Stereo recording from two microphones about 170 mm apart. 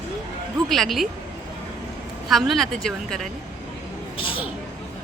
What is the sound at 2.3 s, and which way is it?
Speech, centre (ahead or behind).